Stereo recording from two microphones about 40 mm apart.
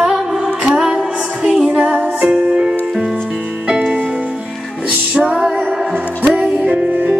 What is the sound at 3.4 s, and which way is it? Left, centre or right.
Music, right.